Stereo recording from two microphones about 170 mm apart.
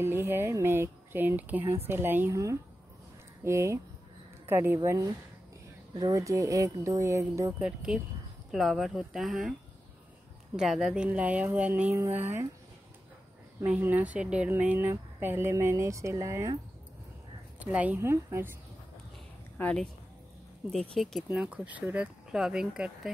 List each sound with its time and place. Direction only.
0.0 s speech: 15° right (ahead or behind)
7.6 s speech: 5° right (ahead or behind)
13.6 s speech: 10° right (ahead or behind)
17.6 s speech: 10° right (ahead or behind)
19.6 s speech: 5° left (ahead or behind)
20.9 s speech: centre (ahead or behind)